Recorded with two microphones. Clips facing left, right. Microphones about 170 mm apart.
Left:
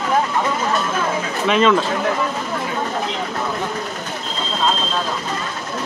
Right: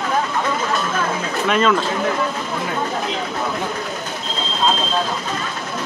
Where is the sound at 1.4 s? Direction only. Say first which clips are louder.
Left 2 dB; centre (ahead or behind).